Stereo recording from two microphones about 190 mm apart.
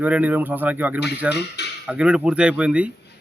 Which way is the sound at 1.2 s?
60° left (ahead or behind).